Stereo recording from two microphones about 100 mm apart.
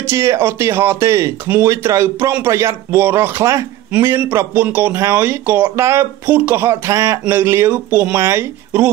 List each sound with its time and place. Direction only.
0.0 s speech: 25° right (ahead or behind)
7.2 s speech: 25° right (ahead or behind)